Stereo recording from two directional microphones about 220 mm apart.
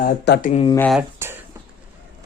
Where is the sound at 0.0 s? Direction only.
40° left (ahead or behind).